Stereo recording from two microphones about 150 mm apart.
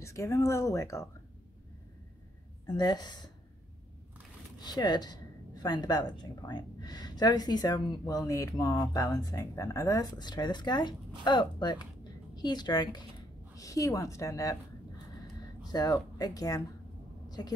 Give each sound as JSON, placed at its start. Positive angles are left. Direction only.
{"t": 0.0, "sound": "speech", "side_deg": 20}
{"t": 2.6, "sound": "speech", "side_deg": 25}
{"t": 4.6, "sound": "speech", "side_deg": 30}
{"t": 15.6, "sound": "speech", "side_deg": 25}